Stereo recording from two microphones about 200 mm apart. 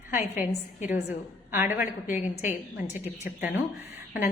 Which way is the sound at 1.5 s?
10° right (ahead or behind).